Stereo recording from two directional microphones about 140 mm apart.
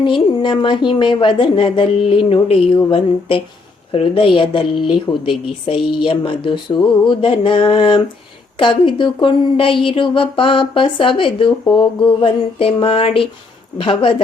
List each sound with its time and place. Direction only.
0.0 s speech: 35° left (ahead or behind)